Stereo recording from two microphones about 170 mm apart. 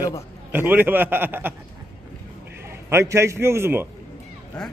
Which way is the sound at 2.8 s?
15° right (ahead or behind).